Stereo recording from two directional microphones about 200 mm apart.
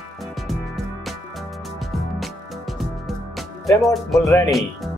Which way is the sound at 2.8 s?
Centre (ahead or behind).